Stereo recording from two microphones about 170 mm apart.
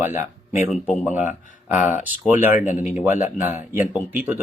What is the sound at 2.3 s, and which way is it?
Speech, 10° right (ahead or behind).